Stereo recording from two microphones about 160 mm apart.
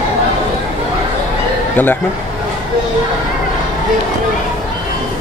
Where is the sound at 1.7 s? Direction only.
10° left (ahead or behind).